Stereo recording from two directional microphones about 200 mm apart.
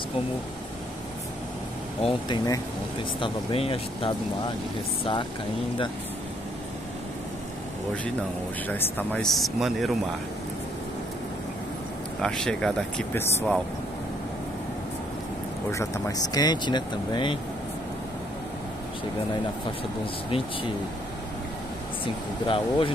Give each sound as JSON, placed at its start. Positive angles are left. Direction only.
{"t": 2.0, "sound": "speech", "side_deg": 20}
{"t": 8.6, "sound": "speech", "side_deg": 10}
{"t": 12.2, "sound": "speech", "side_deg": 5}
{"t": 15.7, "sound": "speech", "side_deg": 15}
{"t": 22.0, "sound": "speech", "side_deg": 25}